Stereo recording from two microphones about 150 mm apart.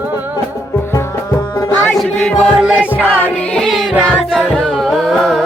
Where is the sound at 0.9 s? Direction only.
15° left (ahead or behind).